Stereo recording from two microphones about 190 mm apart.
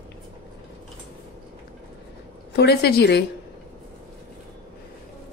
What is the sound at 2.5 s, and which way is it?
Speech, 60° left (ahead or behind).